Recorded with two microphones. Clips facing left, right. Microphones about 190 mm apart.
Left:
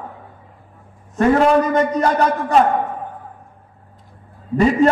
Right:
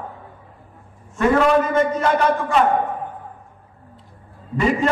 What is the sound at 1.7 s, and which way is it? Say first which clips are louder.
Speech: left 1 dB; 40° left (ahead or behind).